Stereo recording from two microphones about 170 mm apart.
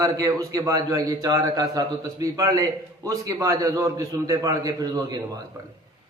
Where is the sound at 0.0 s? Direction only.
20° right (ahead or behind).